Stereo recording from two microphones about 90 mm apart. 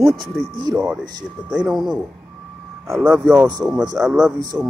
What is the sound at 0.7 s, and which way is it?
Speech, 15° right (ahead or behind).